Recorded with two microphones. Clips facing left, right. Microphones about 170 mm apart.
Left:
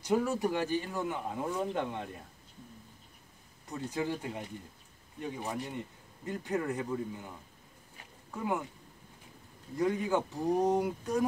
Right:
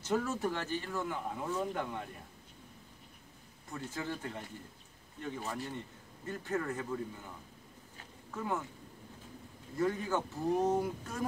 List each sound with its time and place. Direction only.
0.0 s speech: 15° left (ahead or behind)
3.7 s speech: 15° left (ahead or behind)
8.3 s speech: 15° left (ahead or behind)
9.8 s speech: 15° left (ahead or behind)